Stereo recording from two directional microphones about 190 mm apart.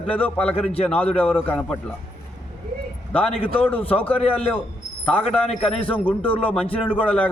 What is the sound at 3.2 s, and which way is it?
Speech, 30° left (ahead or behind).